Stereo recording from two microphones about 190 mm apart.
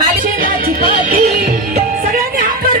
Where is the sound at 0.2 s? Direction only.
50° right (ahead or behind).